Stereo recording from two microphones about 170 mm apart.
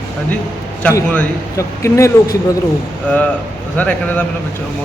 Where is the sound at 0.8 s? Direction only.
10° left (ahead or behind).